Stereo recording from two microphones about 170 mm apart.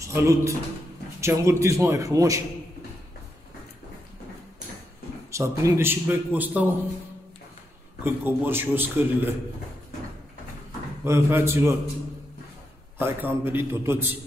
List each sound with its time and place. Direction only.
0.0 s a man's voice: 15° right (ahead or behind)
5.3 s a man's voice: 15° right (ahead or behind)
8.0 s a man's voice: 10° right (ahead or behind)
11.1 s a man's voice: 15° right (ahead or behind)
13.0 s a man's voice: 10° right (ahead or behind)